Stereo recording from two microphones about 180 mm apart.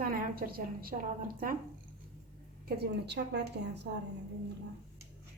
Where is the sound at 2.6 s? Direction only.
60° right (ahead or behind).